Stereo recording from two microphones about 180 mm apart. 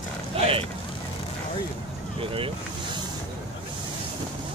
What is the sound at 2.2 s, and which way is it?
Boat, 30° right (ahead or behind).